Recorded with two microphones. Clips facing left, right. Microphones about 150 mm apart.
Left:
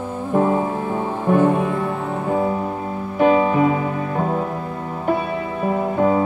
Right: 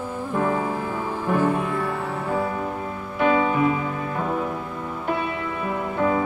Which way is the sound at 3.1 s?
35° left (ahead or behind).